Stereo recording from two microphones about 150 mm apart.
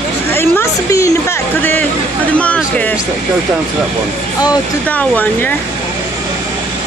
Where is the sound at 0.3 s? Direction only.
15° left (ahead or behind).